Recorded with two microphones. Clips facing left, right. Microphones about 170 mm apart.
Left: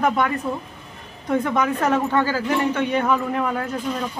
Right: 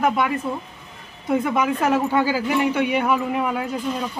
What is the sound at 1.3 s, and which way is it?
Speech, 10° right (ahead or behind).